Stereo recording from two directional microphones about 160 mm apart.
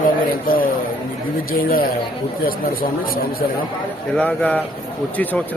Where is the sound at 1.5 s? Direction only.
65° left (ahead or behind).